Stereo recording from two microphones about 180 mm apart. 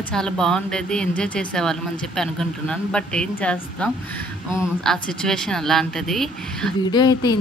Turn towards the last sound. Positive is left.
turn(degrees=25)  # may be behind; listen again after turning